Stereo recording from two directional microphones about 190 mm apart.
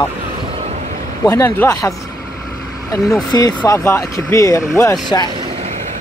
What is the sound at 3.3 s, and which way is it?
Speech, 20° left (ahead or behind).